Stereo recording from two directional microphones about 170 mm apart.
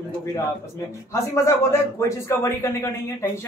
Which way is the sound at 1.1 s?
15° left (ahead or behind).